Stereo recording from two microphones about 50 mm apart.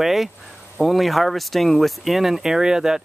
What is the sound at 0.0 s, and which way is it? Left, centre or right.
Speech, centre.